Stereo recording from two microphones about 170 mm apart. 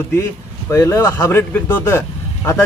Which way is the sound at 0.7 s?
20° left (ahead or behind).